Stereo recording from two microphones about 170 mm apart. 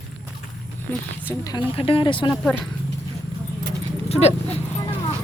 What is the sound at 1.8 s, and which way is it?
Speech, 30° left (ahead or behind).